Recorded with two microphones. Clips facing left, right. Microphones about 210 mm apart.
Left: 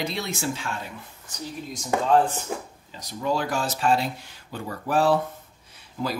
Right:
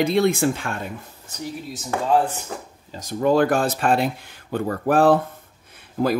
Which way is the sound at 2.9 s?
50° right (ahead or behind).